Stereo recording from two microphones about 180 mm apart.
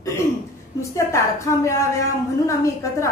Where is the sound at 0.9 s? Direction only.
15° left (ahead or behind).